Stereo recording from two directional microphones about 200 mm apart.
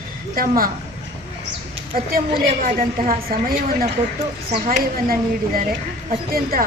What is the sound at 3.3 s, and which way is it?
A woman's voice, 45° right (ahead or behind).